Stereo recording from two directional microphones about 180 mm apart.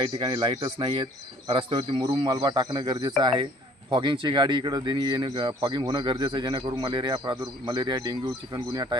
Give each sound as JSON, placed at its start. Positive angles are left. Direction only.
{"t": 0.0, "sound": "speech", "side_deg": -25}